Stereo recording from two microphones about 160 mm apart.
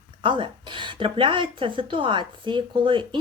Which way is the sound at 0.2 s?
30° right (ahead or behind).